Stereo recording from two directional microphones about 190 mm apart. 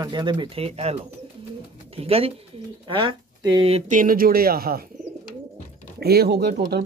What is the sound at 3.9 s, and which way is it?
Speech, 50° right (ahead or behind).